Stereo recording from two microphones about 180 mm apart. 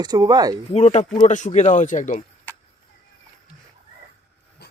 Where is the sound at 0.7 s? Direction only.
40° left (ahead or behind).